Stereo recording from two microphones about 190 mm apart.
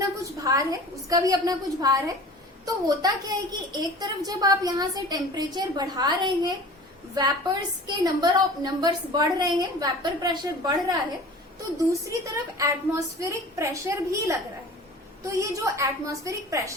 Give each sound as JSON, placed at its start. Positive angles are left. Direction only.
{"t": 0.0, "sound": "a woman's voice", "side_deg": -20}
{"t": 11.9, "sound": "a woman's voice", "side_deg": -15}